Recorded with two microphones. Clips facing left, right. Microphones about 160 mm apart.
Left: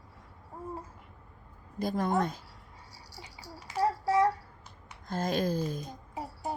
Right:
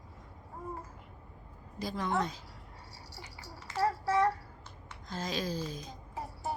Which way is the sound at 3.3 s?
10° left (ahead or behind).